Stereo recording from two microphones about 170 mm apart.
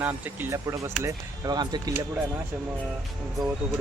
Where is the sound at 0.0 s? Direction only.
10° right (ahead or behind).